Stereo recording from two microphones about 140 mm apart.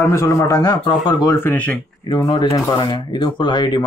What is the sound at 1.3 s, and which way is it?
Speech, 15° left (ahead or behind).